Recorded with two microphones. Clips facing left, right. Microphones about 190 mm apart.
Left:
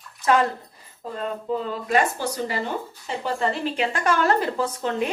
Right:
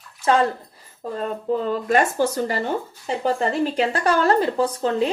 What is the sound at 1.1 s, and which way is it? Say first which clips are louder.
A woman's voice: right 3 dB; 45° right (ahead or behind).